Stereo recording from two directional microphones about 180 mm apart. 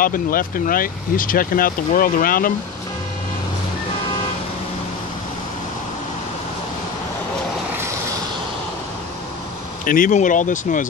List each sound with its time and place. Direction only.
0.0 s speech: 50° left (ahead or behind)
9.8 s speech: 50° left (ahead or behind)